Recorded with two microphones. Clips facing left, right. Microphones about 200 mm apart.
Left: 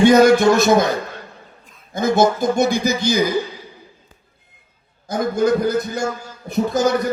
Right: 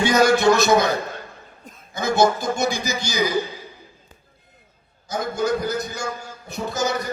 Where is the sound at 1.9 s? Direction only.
50° left (ahead or behind).